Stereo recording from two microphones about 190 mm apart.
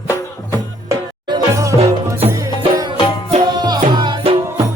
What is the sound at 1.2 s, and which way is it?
Music, 20° right (ahead or behind).